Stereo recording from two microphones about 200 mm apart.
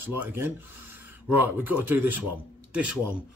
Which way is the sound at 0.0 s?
10° right (ahead or behind).